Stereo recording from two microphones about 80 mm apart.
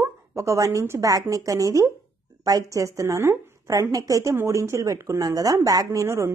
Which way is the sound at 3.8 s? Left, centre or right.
Right.